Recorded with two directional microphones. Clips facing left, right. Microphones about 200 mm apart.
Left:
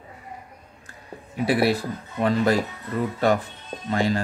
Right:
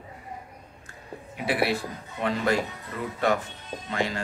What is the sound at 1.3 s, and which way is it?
Speech, 35° left (ahead or behind).